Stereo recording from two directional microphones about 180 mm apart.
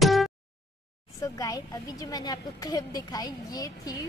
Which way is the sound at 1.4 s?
20° left (ahead or behind).